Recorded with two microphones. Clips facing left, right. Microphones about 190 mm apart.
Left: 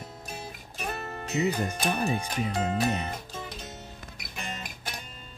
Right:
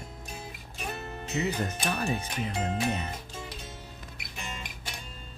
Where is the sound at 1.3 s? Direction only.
15° left (ahead or behind).